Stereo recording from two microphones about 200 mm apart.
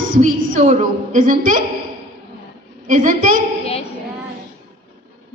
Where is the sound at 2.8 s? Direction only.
40° right (ahead or behind).